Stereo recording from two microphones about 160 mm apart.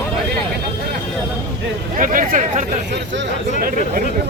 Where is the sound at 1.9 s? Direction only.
55° right (ahead or behind).